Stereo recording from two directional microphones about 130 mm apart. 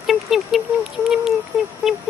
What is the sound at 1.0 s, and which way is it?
Speech, 5° right (ahead or behind).